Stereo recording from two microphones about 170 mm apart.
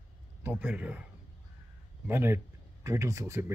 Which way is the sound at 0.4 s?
10° right (ahead or behind).